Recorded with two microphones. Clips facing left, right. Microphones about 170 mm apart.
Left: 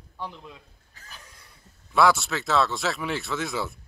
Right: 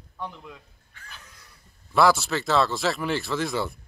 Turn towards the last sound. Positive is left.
turn(degrees=0)  # may be behind; listen again after turning